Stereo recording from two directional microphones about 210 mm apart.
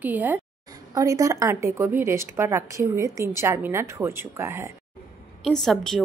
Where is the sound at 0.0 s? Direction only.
10° right (ahead or behind).